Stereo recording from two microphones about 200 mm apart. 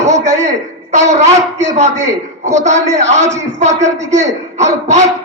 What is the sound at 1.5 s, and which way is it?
A man's voice, 35° right (ahead or behind).